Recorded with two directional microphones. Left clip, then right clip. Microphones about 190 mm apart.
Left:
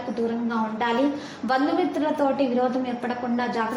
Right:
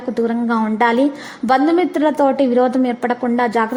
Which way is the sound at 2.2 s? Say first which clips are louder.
Right 8 dB; 40° right (ahead or behind).